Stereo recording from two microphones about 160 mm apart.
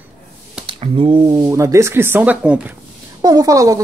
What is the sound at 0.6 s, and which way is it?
Speech, 35° right (ahead or behind).